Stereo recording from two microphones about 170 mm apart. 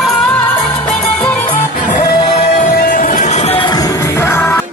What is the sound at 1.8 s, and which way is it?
Music, 50° left (ahead or behind).